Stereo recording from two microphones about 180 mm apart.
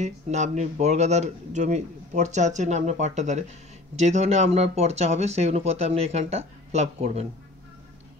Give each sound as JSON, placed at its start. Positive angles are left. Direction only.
{"t": 0.0, "sound": "speech", "side_deg": -40}